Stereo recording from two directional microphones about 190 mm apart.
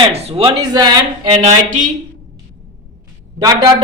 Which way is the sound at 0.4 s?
20° right (ahead or behind).